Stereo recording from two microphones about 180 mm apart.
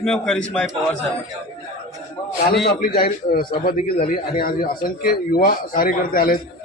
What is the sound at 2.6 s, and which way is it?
Speech, 60° left (ahead or behind).